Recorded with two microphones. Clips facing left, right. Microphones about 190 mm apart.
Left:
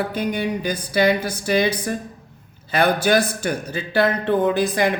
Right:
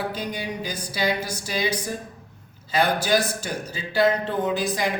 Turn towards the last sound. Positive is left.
turn(degrees=60)  # may be behind; listen again after turning